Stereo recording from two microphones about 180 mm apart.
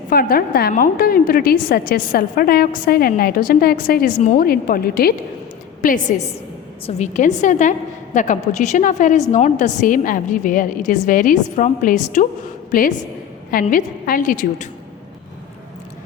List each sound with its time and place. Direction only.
0.1 s a woman's voice: 55° left (ahead or behind)